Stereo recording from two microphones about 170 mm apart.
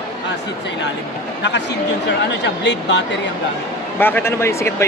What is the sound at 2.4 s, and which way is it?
Speech, 90° left.